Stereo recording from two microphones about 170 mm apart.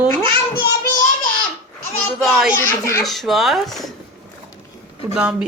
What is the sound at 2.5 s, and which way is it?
Speech, 15° left (ahead or behind).